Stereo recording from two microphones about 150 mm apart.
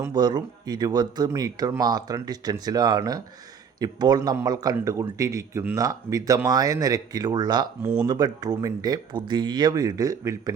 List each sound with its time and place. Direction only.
0.0 s a man's voice: 30° right (ahead or behind)